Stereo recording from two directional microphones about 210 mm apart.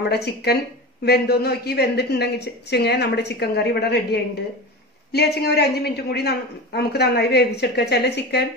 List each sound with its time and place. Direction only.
0.1 s speech: 50° left (ahead or behind)